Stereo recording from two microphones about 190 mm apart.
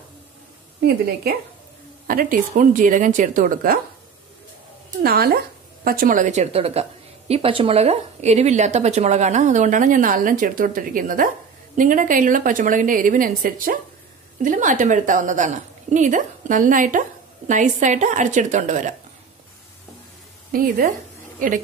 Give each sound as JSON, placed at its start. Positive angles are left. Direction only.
{"t": 0.8, "sound": "a woman's voice", "side_deg": -55}
{"t": 5.0, "sound": "a woman's voice", "side_deg": -55}
{"t": 20.5, "sound": "a woman's voice", "side_deg": -45}